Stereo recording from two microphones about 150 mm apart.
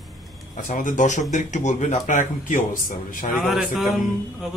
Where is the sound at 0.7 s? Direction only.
60° left (ahead or behind).